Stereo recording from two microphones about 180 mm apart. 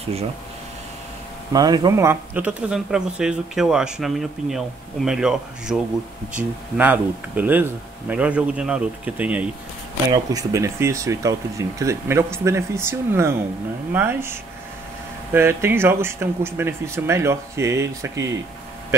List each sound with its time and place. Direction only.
1.5 s speech: 20° right (ahead or behind)
10.1 s speech: 20° right (ahead or behind)